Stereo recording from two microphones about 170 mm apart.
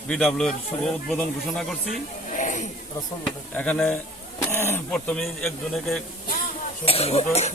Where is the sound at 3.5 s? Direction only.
10° left (ahead or behind).